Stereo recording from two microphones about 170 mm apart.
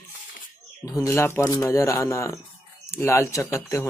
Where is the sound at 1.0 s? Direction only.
15° left (ahead or behind).